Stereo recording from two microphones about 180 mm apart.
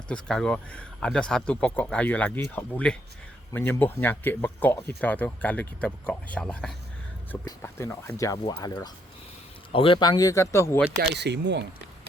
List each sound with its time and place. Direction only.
0.1 s speech: 5° left (ahead or behind)
7.4 s speech: 15° left (ahead or behind)
11.1 s speech: 70° right (ahead or behind)